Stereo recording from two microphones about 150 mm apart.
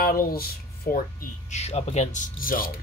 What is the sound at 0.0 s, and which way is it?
Speech, 85° left.